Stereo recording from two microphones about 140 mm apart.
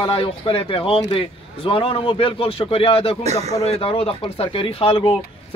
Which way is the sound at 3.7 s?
40° left (ahead or behind).